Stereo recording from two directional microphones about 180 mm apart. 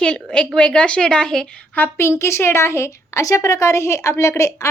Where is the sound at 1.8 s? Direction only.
15° left (ahead or behind).